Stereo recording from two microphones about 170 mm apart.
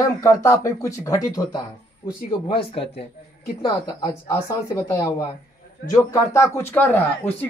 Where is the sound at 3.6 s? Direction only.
20° left (ahead or behind).